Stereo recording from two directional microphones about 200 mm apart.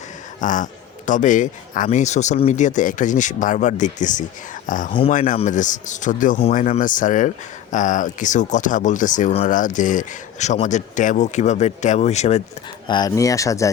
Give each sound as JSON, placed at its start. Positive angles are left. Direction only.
{"t": 0.4, "sound": "speech", "side_deg": 40}
{"t": 4.9, "sound": "speech", "side_deg": 30}
{"t": 12.9, "sound": "speech", "side_deg": 20}